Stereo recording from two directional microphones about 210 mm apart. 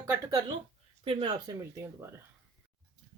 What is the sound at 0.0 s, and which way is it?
Speech, 15° right (ahead or behind).